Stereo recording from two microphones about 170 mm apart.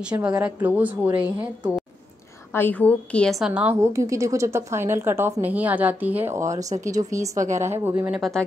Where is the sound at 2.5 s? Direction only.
10° left (ahead or behind); by 8.2 s 15° right (ahead or behind).